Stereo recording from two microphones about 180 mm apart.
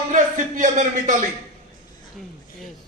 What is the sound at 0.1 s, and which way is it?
A man's voice, 45° right (ahead or behind).